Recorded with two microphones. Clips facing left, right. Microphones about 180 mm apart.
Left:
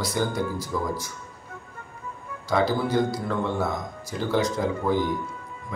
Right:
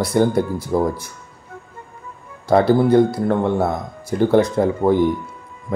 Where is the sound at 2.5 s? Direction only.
60° right (ahead or behind).